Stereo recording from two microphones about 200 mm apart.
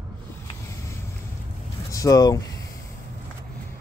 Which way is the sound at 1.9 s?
15° left (ahead or behind).